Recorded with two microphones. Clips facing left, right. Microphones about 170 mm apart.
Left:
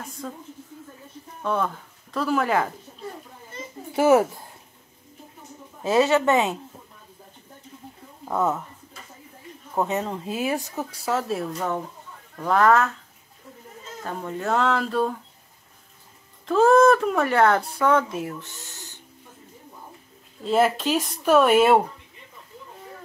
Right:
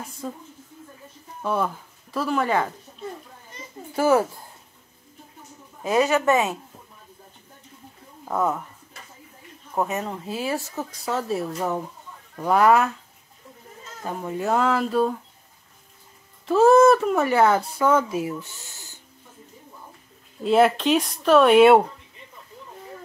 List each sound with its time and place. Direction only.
0.2 s speech: 10° right (ahead or behind)
1.4 s speech: 5° right (ahead or behind)
3.9 s speech: 20° left (ahead or behind)
6.1 s speech: 20° left (ahead or behind)
8.3 s speech: centre (ahead or behind)
10.1 s speech: 20° left (ahead or behind)
11.1 s speech: centre (ahead or behind)
14.0 s speech: 10° right (ahead or behind)
16.4 s speech: 5° right (ahead or behind)
20.4 s speech: centre (ahead or behind)